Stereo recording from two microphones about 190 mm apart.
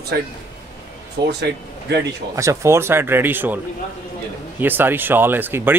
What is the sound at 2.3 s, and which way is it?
A man's voice, 15° right (ahead or behind).